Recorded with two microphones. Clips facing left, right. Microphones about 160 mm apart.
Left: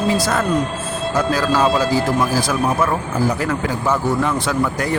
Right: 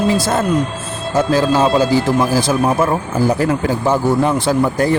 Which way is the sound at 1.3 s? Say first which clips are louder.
Right 4 dB; 30° right (ahead or behind).